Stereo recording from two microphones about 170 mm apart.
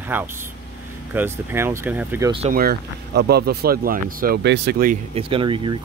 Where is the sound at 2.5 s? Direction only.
65° right (ahead or behind); by 4.7 s 85° right.